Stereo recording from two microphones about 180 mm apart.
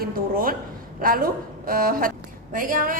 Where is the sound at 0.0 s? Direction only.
50° right (ahead or behind).